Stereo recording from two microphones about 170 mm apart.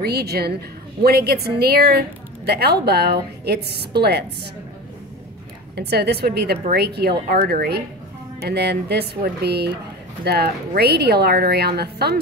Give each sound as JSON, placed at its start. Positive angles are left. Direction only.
{"t": 0.0, "sound": "a woman's voice", "side_deg": -70}
{"t": 5.8, "sound": "a woman's voice", "side_deg": -70}